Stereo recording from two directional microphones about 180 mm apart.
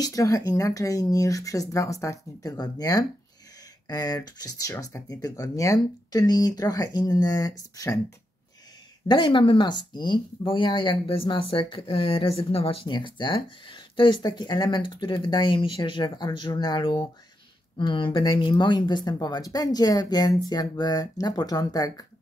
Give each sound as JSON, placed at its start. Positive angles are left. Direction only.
{"t": 0.0, "sound": "speech", "side_deg": 20}
{"t": 9.0, "sound": "speech", "side_deg": 25}